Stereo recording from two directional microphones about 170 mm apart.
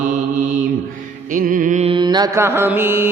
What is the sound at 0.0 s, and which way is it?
Mantra, 50° right (ahead or behind).